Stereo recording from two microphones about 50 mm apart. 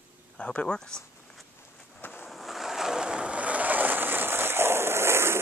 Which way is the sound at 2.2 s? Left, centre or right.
Centre.